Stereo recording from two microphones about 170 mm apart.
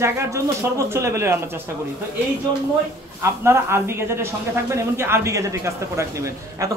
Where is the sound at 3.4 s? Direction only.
15° right (ahead or behind).